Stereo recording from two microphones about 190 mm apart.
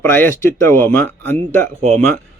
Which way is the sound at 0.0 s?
10° left (ahead or behind).